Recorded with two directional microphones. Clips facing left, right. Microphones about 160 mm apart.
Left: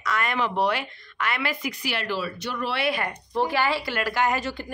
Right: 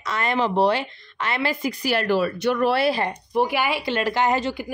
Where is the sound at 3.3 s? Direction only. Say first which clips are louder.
Right 1 dB; 15° right (ahead or behind).